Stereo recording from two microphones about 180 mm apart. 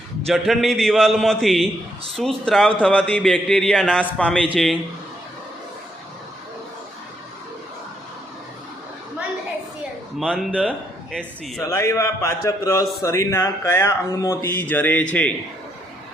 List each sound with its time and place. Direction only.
0.3 s speech: centre (ahead or behind)
10.2 s speech: centre (ahead or behind)
11.6 s speech: 15° left (ahead or behind)